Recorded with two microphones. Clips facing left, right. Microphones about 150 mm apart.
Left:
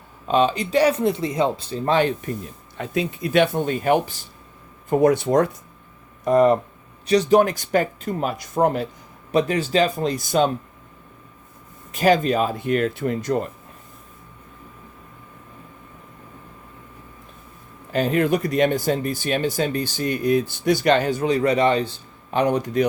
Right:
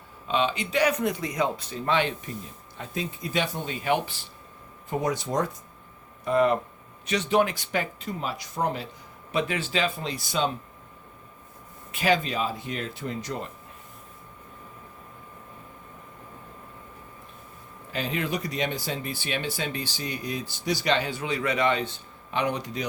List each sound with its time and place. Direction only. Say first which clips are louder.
0.3 s speech: left 7 dB; 40° left (ahead or behind)
2.7 s speech: left 8 dB; 75° left (ahead or behind); by 4.2 s 45° left (ahead or behind)
4.9 s speech: left 11 dB; 55° left (ahead or behind)
6.2 s speech: left 6 dB; 40° left (ahead or behind)
9.3 s speech: left 8 dB; 40° left (ahead or behind)
11.9 s speech: left 7 dB; 40° left (ahead or behind)
17.9 s speech: left 10 dB; 50° left (ahead or behind)